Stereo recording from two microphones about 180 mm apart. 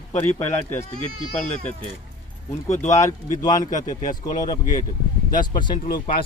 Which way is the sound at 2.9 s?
20° left (ahead or behind).